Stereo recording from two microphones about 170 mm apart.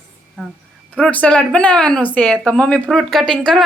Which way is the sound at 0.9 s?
10° left (ahead or behind).